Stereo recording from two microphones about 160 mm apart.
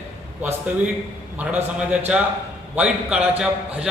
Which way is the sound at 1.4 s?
10° right (ahead or behind).